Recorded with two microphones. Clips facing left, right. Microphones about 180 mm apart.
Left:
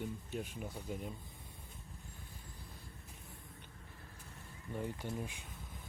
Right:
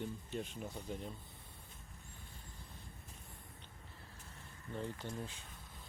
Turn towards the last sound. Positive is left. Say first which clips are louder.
# left 3 dB
turn(degrees=10)  # may be behind; listen again after turning